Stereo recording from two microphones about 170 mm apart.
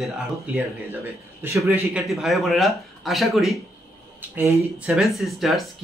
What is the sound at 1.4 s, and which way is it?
Speech, 10° right (ahead or behind).